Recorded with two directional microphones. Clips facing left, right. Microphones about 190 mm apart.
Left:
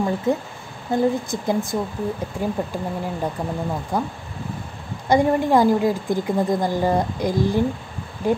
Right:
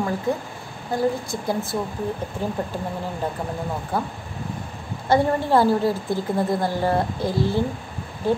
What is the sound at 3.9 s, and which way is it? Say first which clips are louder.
A woman's voice: left 2 dB; 15° left (ahead or behind).